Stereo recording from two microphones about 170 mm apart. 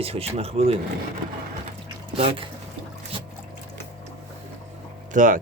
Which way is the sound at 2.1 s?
35° right (ahead or behind).